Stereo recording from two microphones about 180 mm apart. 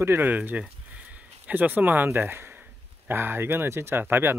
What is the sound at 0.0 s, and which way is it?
Speech, 10° right (ahead or behind).